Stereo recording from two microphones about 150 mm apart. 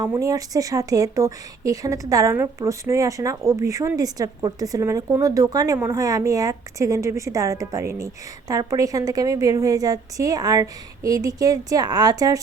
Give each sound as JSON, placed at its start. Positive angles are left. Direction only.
{"t": 0.0, "sound": "speech", "side_deg": -20}